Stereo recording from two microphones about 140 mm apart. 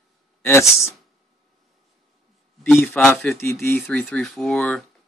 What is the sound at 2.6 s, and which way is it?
Speech, 10° left (ahead or behind).